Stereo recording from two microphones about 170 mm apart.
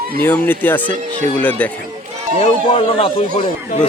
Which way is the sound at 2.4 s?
35° left (ahead or behind).